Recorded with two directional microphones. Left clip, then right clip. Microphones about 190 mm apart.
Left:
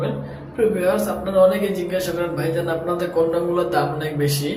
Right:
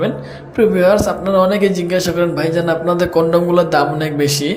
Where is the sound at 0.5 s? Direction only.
45° right (ahead or behind).